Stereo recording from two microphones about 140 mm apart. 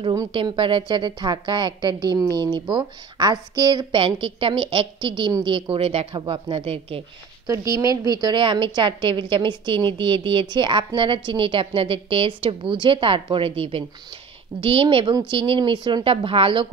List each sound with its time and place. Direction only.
0.1 s a woman's voice: 25° right (ahead or behind)
0.4 s a woman's voice: 35° right (ahead or behind)
7.4 s a woman's voice: 25° right (ahead or behind); by 16.6 s 40° right (ahead or behind)